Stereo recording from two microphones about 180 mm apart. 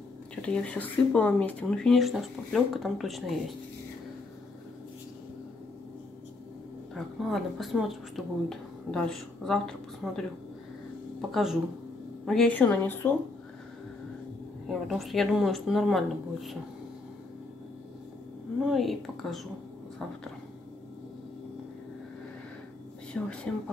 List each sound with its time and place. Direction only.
0.4 s speech: 5° left (ahead or behind)
7.2 s a woman's voice: centre (ahead or behind)
14.7 s speech: centre (ahead or behind)
18.7 s speech: centre (ahead or behind)
23.1 s speech: 5° left (ahead or behind)